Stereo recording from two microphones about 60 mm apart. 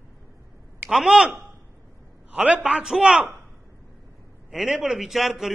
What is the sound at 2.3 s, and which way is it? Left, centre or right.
Speech, centre.